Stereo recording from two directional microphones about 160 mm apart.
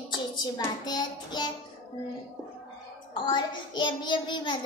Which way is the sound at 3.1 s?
30° left (ahead or behind).